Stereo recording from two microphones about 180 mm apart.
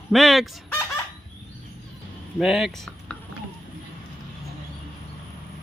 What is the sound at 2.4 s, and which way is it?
Speech, centre (ahead or behind).